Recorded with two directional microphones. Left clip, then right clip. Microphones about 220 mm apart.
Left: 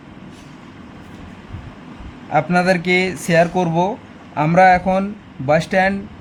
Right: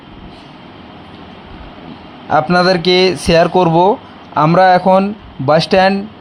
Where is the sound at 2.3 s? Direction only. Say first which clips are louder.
Right 5 dB; 15° right (ahead or behind).